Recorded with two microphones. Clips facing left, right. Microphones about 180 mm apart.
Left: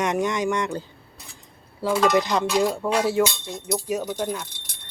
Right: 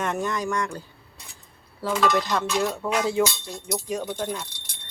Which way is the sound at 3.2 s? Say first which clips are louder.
Left 1 dB; 20° left (ahead or behind).